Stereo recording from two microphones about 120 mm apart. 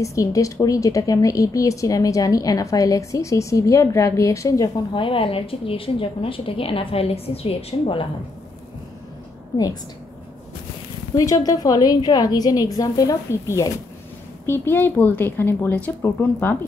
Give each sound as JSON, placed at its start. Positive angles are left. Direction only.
{"t": 0.0, "sound": "speech", "side_deg": 25}
{"t": 4.9, "sound": "a woman's voice", "side_deg": 45}
{"t": 11.1, "sound": "a woman's voice", "side_deg": 30}